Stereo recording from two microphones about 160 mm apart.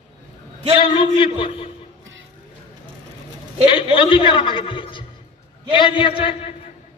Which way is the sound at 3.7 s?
35° left (ahead or behind).